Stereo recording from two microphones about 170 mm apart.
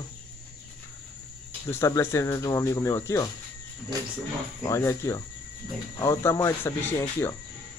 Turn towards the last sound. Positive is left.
turn(degrees=15)  # may be behind; listen again after turning